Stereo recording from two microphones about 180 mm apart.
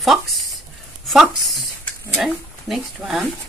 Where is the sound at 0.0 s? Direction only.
Centre (ahead or behind).